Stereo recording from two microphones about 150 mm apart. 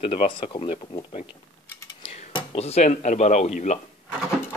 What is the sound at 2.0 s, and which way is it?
Speech, 40° left (ahead or behind).